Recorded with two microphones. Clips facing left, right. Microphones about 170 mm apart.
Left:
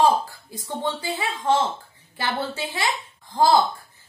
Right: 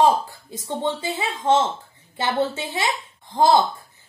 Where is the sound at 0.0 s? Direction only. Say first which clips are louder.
Right 1 dB; 20° right (ahead or behind).